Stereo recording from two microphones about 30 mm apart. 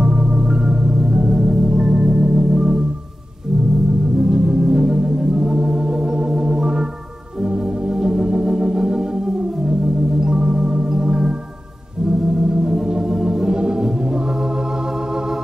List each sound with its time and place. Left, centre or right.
0.0 s organ: right
4.2 s organ: right
10.2 s organ: right
12.4 s organ: right